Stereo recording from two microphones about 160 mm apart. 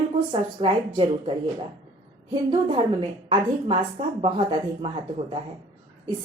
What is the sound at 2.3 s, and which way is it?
A woman's voice, 30° right (ahead or behind).